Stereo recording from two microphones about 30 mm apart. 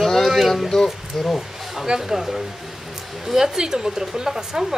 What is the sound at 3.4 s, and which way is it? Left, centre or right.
Speech, centre.